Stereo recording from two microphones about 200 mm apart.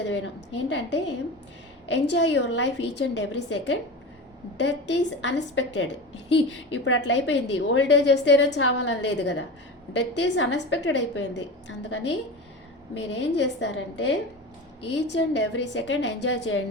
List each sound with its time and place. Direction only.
0.0 s a woman's voice: 60° left (ahead or behind)